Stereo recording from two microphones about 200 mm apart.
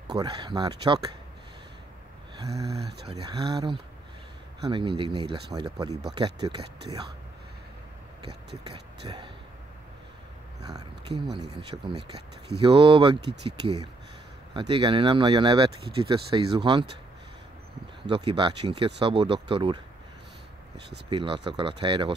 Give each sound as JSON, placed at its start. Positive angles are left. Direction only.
{"t": 0.1, "sound": "speech", "side_deg": -20}
{"t": 3.1, "sound": "speech", "side_deg": -25}
{"t": 9.0, "sound": "speech", "side_deg": -25}
{"t": 10.7, "sound": "speech", "side_deg": -20}
{"t": 14.5, "sound": "speech", "side_deg": -25}
{"t": 18.0, "sound": "speech", "side_deg": -25}
{"t": 21.1, "sound": "speech", "side_deg": -25}